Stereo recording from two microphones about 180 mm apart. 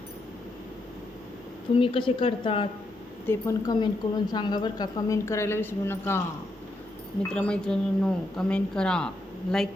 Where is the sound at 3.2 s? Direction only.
15° left (ahead or behind).